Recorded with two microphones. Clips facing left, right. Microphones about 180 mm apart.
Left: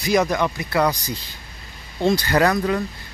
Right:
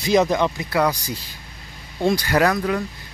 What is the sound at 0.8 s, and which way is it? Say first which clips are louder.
Speech: even; 10° right (ahead or behind).